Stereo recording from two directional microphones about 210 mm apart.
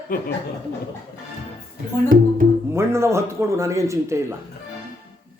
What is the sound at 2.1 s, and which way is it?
Speech, 45° right (ahead or behind).